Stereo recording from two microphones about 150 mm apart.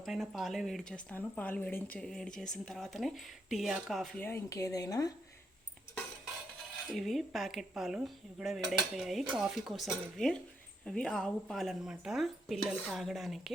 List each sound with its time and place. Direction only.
0.0 s speech: centre (ahead or behind)
4.2 s speech: 15° left (ahead or behind)
6.8 s speech: centre (ahead or behind)